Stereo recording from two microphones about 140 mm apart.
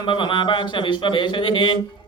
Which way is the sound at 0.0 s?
35° left (ahead or behind).